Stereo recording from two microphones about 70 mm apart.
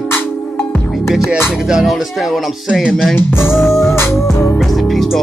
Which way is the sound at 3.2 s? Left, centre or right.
Left.